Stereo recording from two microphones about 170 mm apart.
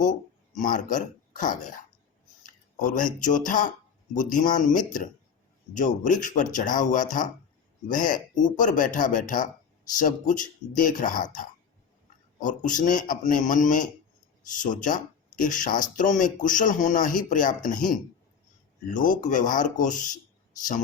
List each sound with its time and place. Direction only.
0.0 s a sound: 50° left (ahead or behind)
2.4 s speech: 50° left (ahead or behind)
12.4 s speech: 50° left (ahead or behind)